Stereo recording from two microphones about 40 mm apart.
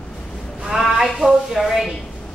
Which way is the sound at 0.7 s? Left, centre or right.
Right.